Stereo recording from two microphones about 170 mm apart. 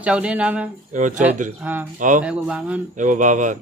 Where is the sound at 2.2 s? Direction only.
5° right (ahead or behind).